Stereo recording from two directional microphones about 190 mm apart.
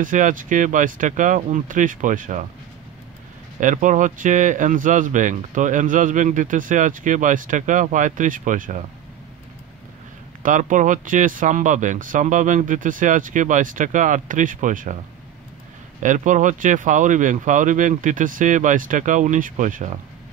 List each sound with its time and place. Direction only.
0.0 s speech: 45° right (ahead or behind)
3.6 s speech: 40° right (ahead or behind)
10.4 s speech: 40° right (ahead or behind)
16.0 s speech: 40° right (ahead or behind)